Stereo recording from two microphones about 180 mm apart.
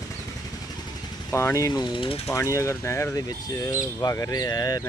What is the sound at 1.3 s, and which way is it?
Speech, 15° left (ahead or behind).